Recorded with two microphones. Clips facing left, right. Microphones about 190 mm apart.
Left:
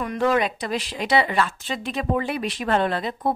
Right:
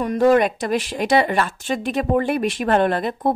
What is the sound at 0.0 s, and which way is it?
Speech, 40° right (ahead or behind).